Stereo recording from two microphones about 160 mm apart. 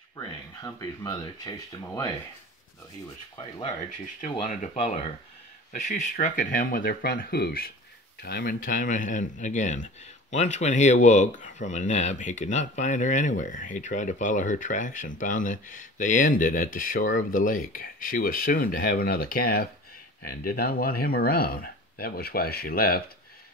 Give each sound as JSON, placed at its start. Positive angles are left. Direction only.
{"t": 0.1, "sound": "speech", "side_deg": 20}
{"t": 4.2, "sound": "speech", "side_deg": 50}
{"t": 5.7, "sound": "speech", "side_deg": 50}